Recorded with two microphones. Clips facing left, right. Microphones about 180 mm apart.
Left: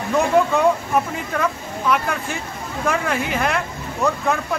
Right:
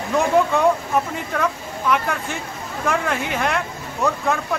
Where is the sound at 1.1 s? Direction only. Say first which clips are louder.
Even; centre (ahead or behind).